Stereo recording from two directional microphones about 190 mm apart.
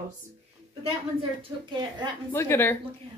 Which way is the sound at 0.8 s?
25° right (ahead or behind).